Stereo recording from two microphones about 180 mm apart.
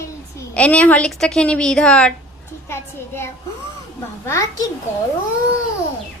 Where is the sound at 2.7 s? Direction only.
15° left (ahead or behind).